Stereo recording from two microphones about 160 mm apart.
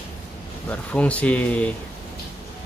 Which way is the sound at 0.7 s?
10° left (ahead or behind).